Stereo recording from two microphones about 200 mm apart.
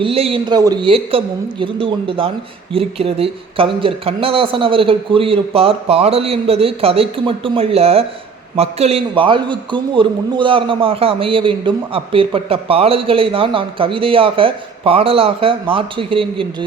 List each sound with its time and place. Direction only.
0.0 s a man's voice: 30° right (ahead or behind)